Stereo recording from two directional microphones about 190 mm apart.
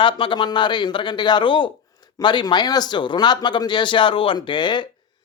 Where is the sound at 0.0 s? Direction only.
25° left (ahead or behind).